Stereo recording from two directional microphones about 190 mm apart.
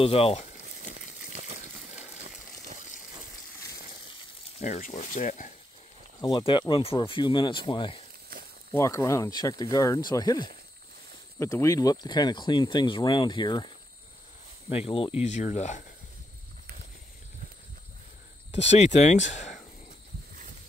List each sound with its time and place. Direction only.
0.0 s speech: 30° left (ahead or behind)
0.8 s a sound: 35° right (ahead or behind)
4.6 s speech: 35° left (ahead or behind)
6.2 s speech: 25° left (ahead or behind)
14.7 s speech: 30° left (ahead or behind)
18.7 s speech: 35° left (ahead or behind)